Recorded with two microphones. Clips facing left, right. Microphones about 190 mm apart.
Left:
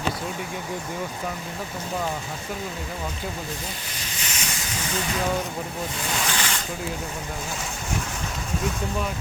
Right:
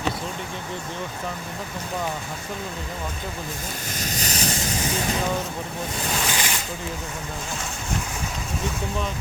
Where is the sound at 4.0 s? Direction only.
40° right (ahead or behind).